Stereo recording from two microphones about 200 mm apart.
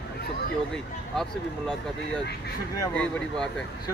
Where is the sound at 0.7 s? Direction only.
5° left (ahead or behind).